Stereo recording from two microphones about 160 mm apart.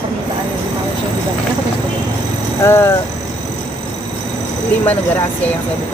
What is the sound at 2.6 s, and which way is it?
Speech, 15° left (ahead or behind).